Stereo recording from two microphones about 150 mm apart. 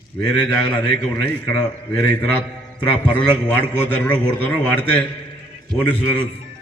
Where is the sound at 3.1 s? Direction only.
15° left (ahead or behind).